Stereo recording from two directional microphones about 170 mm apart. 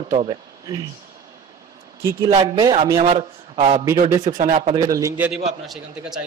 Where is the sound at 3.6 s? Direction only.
35° right (ahead or behind).